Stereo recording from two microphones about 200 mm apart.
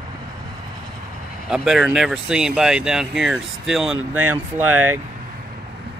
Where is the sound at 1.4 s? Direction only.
Centre (ahead or behind).